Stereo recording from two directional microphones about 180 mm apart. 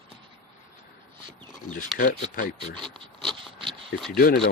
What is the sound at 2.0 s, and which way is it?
Speech, 50° left (ahead or behind).